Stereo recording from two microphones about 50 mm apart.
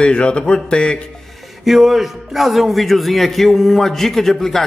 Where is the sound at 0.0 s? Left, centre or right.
Left.